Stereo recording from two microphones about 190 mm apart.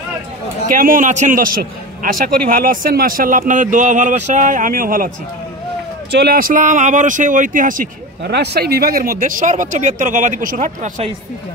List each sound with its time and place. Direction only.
0.7 s a man's voice: 45° right (ahead or behind)
6.1 s a man's voice: 50° right (ahead or behind)
8.2 s a man's voice: 60° right (ahead or behind); by 11.1 s 40° right (ahead or behind)